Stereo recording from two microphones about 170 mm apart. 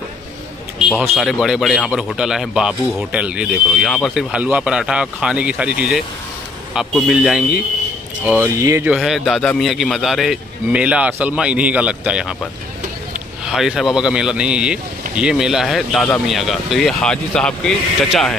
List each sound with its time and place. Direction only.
0.7 s speech: 5° right (ahead or behind)
8.3 s speech: 15° right (ahead or behind)
8.9 s speech: centre (ahead or behind)
13.5 s speech: centre (ahead or behind)